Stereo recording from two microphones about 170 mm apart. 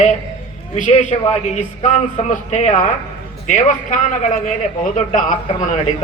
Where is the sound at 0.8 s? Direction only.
45° left (ahead or behind).